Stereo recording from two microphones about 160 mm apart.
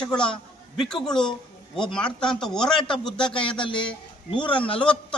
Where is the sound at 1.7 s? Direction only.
5° left (ahead or behind).